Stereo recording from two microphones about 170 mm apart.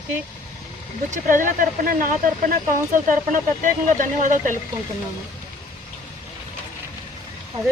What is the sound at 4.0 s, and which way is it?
Speech, 50° right (ahead or behind).